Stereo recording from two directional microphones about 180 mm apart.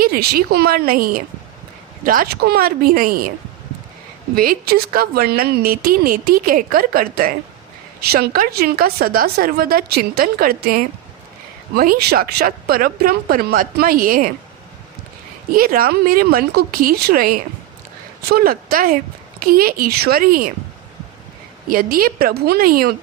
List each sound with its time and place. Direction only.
0.0 s speech: 60° right (ahead or behind)
4.4 s speech: 55° right (ahead or behind)
15.5 s speech: 55° right (ahead or behind)
21.7 s speech: 55° right (ahead or behind)